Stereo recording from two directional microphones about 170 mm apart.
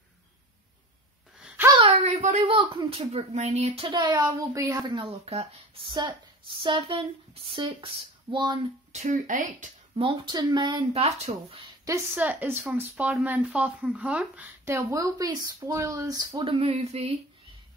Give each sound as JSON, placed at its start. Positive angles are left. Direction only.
{"t": 2.0, "sound": "a sound", "side_deg": -45}
{"t": 2.3, "sound": "speech", "side_deg": -30}
{"t": 8.9, "sound": "speech", "side_deg": -50}
{"t": 9.9, "sound": "speech", "side_deg": -30}
{"t": 11.8, "sound": "speech", "side_deg": -15}